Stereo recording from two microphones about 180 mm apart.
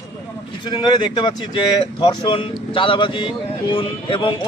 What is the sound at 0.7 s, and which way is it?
Speech, 25° left (ahead or behind).